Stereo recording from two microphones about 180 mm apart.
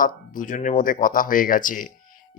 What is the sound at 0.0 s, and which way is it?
Speech, 50° left (ahead or behind).